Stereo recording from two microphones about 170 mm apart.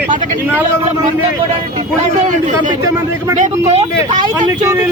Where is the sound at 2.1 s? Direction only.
45° right (ahead or behind).